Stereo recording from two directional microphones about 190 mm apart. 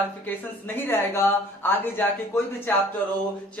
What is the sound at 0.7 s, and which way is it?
A woman's voice, 10° left (ahead or behind).